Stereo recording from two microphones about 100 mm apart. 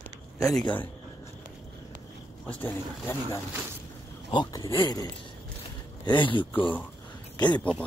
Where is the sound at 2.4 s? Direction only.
20° left (ahead or behind).